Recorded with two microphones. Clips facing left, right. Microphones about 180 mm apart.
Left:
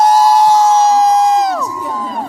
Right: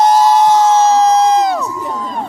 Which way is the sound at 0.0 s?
10° left (ahead or behind).